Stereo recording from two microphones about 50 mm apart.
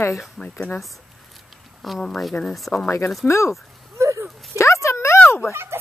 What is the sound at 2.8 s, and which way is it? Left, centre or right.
Speech, left.